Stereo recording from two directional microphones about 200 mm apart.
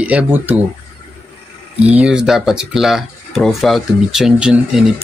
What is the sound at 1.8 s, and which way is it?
A man's voice, 5° right (ahead or behind).